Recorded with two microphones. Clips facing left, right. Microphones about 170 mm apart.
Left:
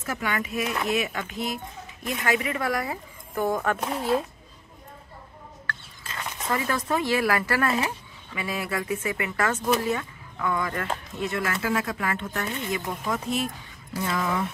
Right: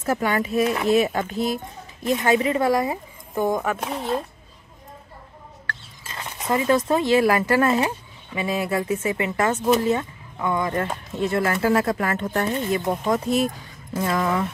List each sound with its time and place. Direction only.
0.0 s speech: 35° right (ahead or behind); by 3.7 s 15° right (ahead or behind)
3.7 s speech: centre (ahead or behind)
6.0 s speech: 20° right (ahead or behind); by 14.3 s 45° right (ahead or behind)